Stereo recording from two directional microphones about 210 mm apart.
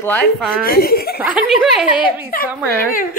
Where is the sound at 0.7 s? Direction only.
45° left (ahead or behind).